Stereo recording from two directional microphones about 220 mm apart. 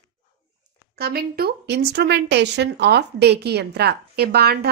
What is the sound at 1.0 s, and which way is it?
Speech, 45° right (ahead or behind).